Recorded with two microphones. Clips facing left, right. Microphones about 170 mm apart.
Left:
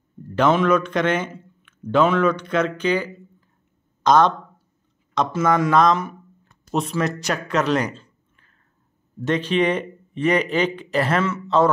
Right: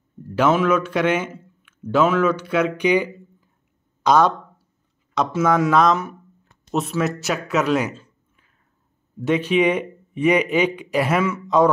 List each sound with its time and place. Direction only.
0.4 s a man's voice: 5° right (ahead or behind)